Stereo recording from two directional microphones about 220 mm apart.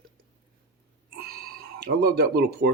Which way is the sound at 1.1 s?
45° right (ahead or behind).